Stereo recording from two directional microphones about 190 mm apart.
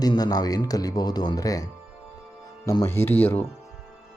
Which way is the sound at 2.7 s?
15° left (ahead or behind).